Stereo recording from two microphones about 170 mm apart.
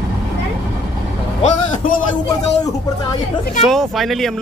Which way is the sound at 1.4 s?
45° left (ahead or behind).